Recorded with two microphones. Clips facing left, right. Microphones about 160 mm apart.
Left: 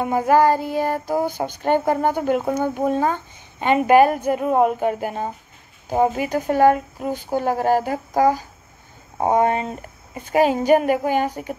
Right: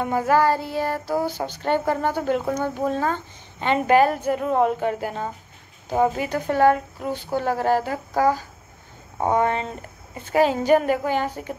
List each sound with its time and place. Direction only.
0.0 s child singing: 15° left (ahead or behind)